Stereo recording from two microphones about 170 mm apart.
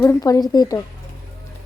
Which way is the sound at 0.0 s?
15° left (ahead or behind).